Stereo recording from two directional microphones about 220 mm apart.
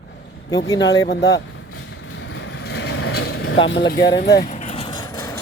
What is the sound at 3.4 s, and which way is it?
Speech, 60° left (ahead or behind).